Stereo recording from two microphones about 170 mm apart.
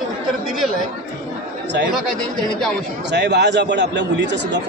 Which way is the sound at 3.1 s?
90° right.